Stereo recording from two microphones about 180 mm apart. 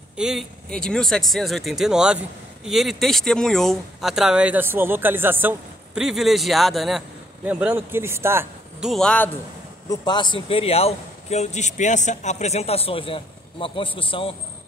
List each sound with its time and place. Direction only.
0.2 s speech: centre (ahead or behind)
7.4 s a man's voice: 10° right (ahead or behind)
8.8 s speech: 5° left (ahead or behind)
9.8 s a man's voice: 25° left (ahead or behind)